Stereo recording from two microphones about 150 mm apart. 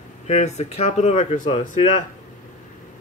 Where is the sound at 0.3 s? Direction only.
50° left (ahead or behind).